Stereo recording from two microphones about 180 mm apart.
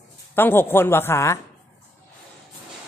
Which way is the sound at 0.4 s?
10° left (ahead or behind).